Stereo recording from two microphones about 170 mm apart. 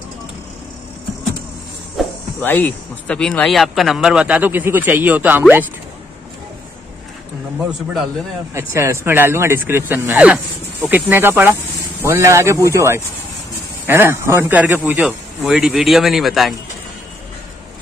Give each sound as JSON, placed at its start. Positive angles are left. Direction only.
{"t": 2.0, "sound": "cricket", "side_deg": 0}
{"t": 2.4, "sound": "speech", "side_deg": 10}
{"t": 8.5, "sound": "speech", "side_deg": -15}